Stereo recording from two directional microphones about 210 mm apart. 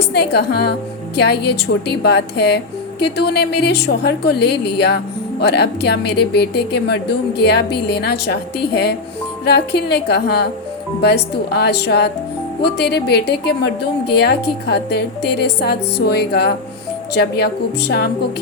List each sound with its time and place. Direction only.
0.1 s a woman's voice: 50° left (ahead or behind)